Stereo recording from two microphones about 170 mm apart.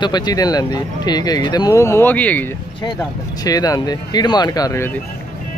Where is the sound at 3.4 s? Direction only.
20° left (ahead or behind).